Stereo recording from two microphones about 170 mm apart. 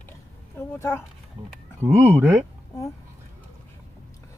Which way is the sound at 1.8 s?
15° right (ahead or behind).